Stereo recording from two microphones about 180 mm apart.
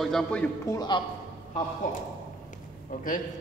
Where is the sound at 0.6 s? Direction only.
20° left (ahead or behind).